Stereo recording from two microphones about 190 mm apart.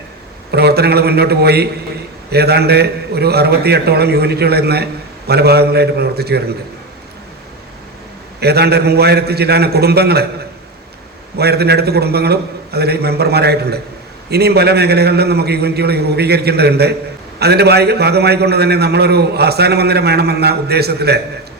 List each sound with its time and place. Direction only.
0.5 s a man's voice: 60° right (ahead or behind)
8.4 s a man's voice: 60° right (ahead or behind)
11.3 s a man's voice: 60° right (ahead or behind)